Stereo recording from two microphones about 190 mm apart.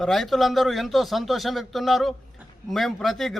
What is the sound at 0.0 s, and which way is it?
A man's voice, centre (ahead or behind).